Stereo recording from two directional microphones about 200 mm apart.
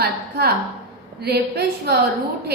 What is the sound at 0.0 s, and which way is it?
A woman's voice, 50° right (ahead or behind).